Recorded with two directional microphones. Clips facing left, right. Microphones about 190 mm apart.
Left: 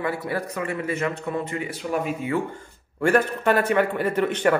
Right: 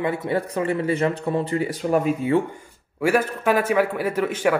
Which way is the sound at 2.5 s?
10° right (ahead or behind).